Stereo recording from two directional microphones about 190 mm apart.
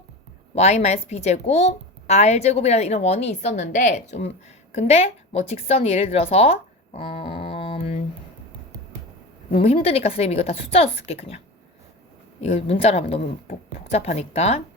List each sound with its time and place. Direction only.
0.5 s a woman's voice: 35° left (ahead or behind)
9.5 s a woman's voice: 30° left (ahead or behind)
12.4 s a woman's voice: 35° left (ahead or behind)